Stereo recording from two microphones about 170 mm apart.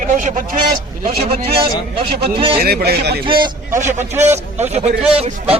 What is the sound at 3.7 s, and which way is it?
A man's voice, 45° right (ahead or behind).